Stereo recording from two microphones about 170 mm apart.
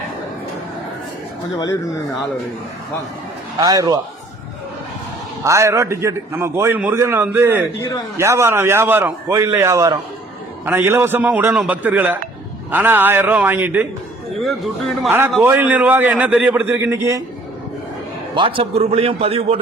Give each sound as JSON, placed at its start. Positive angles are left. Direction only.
{"t": 1.5, "sound": "speech", "side_deg": 25}
{"t": 3.6, "sound": "a man's voice", "side_deg": -20}
{"t": 5.4, "sound": "a man's voice", "side_deg": -15}
{"t": 15.4, "sound": "a man's voice", "side_deg": -10}
{"t": 18.3, "sound": "a man's voice", "side_deg": -30}